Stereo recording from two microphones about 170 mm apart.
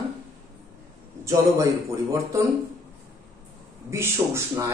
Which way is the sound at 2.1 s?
20° right (ahead or behind).